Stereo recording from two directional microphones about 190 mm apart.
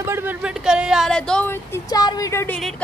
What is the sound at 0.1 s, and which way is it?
Speech, 10° right (ahead or behind).